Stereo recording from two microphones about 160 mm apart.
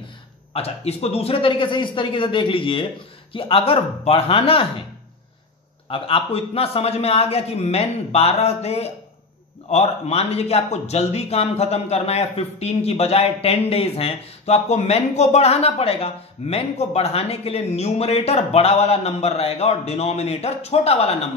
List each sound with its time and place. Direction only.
0.5 s a man's voice: 40° left (ahead or behind)
5.9 s a man's voice: 35° left (ahead or behind)